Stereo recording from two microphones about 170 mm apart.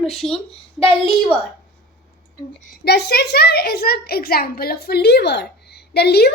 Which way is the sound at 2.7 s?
70° left (ahead or behind).